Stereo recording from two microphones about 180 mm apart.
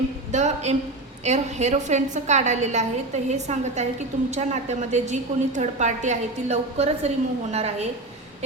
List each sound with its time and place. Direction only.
0.3 s a woman's voice: 40° right (ahead or behind)